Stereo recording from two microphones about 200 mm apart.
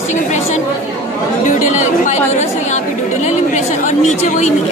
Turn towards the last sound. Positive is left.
turn(degrees=35)  # may be behind; listen again after turning